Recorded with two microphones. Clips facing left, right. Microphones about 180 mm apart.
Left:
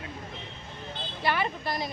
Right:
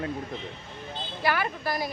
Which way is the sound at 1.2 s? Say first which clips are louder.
Right 1 dB; 20° left (ahead or behind).